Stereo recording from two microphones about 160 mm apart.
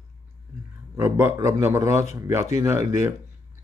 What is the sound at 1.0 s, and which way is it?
Speech, 15° right (ahead or behind).